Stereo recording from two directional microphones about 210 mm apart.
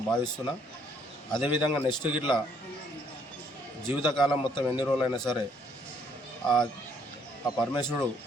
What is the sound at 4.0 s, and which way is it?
Speech, 20° left (ahead or behind).